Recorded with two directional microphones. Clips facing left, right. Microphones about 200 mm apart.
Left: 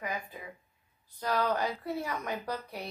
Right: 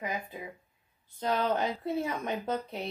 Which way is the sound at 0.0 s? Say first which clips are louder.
Right 2 dB; 20° right (ahead or behind).